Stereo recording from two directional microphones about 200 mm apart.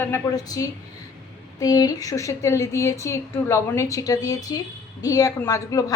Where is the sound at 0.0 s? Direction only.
15° left (ahead or behind).